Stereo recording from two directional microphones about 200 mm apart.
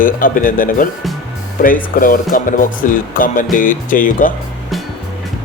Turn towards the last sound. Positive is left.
turn(degrees=45)  # may be behind; listen again after turning